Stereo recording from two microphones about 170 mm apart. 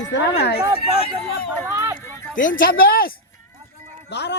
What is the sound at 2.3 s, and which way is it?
Speech, 55° left (ahead or behind).